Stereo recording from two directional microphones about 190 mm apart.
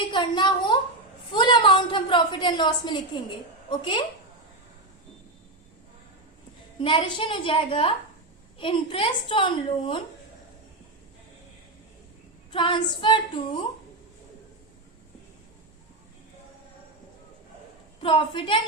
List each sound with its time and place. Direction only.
0.0 s a woman's voice: 25° left (ahead or behind)
6.7 s a woman's voice: 25° left (ahead or behind)
12.5 s a woman's voice: 25° left (ahead or behind)
18.0 s a woman's voice: 25° left (ahead or behind)